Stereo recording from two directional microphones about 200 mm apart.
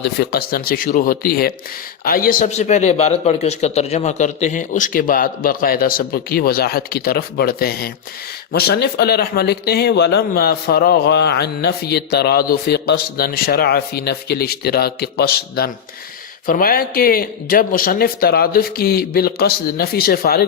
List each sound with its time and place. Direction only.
0.0 s speech: 55° left (ahead or behind)